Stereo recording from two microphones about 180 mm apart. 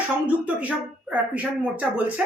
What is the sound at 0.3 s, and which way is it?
Speech, 10° right (ahead or behind).